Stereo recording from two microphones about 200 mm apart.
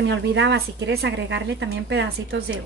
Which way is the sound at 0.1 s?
65° right (ahead or behind).